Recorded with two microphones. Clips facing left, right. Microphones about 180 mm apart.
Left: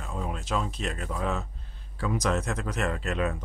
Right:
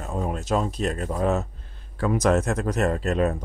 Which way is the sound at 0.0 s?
45° right (ahead or behind).